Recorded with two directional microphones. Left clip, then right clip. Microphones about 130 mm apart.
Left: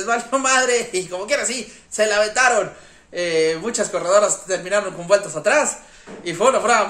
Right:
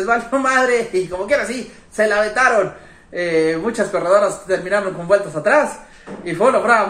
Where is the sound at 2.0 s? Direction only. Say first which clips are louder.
Right 2 dB; 10° left (ahead or behind).